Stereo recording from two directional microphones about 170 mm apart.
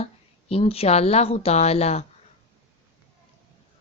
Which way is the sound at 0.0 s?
35° left (ahead or behind).